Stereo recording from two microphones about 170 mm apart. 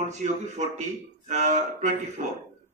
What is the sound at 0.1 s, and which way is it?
A man's voice, 45° right (ahead or behind).